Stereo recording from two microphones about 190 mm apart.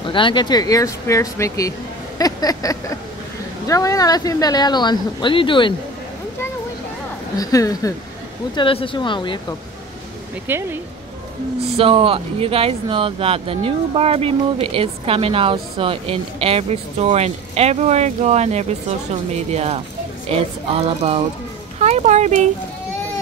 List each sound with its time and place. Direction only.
0.0 s speech: 25° left (ahead or behind)
2.1 s a sound: 20° left (ahead or behind)
3.6 s speech: 15° left (ahead or behind)
7.3 s speech: 15° left (ahead or behind)
10.5 s speech: 10° right (ahead or behind)
11.7 s speech: 30° right (ahead or behind)